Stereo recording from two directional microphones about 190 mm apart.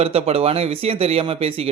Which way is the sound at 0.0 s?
30° right (ahead or behind).